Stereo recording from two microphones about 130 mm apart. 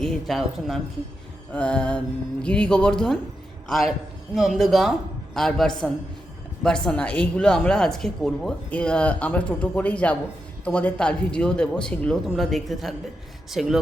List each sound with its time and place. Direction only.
0.0 s a woman's voice: centre (ahead or behind)